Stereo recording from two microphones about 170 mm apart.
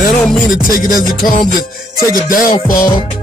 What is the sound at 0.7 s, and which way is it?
Music, 55° left (ahead or behind).